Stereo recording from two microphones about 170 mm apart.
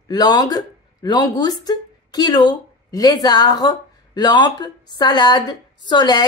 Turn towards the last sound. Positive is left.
turn(degrees=25)  # may be behind; listen again after turning